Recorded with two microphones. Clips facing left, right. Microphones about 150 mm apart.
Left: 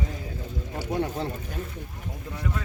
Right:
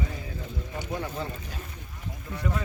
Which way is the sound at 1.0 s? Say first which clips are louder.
Left 3 dB; 55° left (ahead or behind).